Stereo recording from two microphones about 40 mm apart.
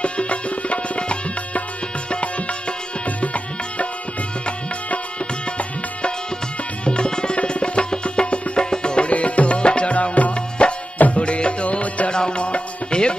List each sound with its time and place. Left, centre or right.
0.0 s tabla: left
2.0 s music: left
6.8 s music: left
12.1 s music: left